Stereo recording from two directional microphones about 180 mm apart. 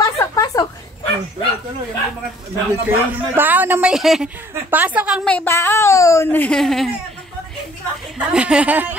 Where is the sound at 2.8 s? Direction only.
10° right (ahead or behind).